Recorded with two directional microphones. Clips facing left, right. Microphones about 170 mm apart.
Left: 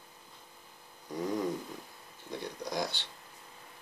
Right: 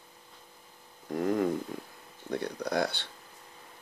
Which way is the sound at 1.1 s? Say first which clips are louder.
Right 5 dB; 55° right (ahead or behind).